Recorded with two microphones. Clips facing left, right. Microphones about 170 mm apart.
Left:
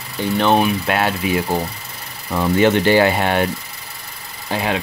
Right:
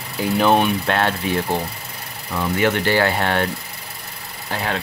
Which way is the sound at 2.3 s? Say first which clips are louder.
Left 5 dB; 25° left (ahead or behind).